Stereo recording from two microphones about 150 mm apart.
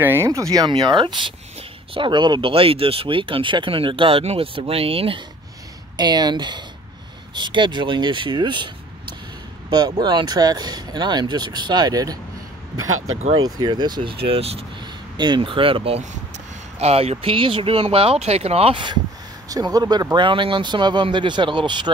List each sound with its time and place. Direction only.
0.0 s speech: 15° right (ahead or behind); by 5.2 s 40° right (ahead or behind)
5.9 s speech: 30° right (ahead or behind)
9.7 s speech: 25° right (ahead or behind)
13.3 s speech: 25° right (ahead or behind)
14.3 s speech: 40° right (ahead or behind)
15.1 s speech: 30° right (ahead or behind)